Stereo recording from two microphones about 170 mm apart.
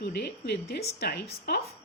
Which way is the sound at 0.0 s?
75° left (ahead or behind).